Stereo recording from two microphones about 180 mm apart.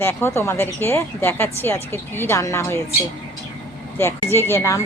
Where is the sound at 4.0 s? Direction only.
15° left (ahead or behind).